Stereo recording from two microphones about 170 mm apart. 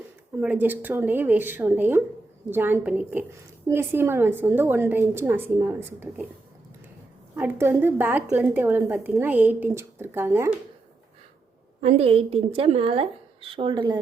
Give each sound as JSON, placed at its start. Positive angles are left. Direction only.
{"t": 0.3, "sound": "a woman's voice", "side_deg": -10}
{"t": 7.3, "sound": "a woman's voice", "side_deg": -10}
{"t": 11.8, "sound": "speech", "side_deg": -35}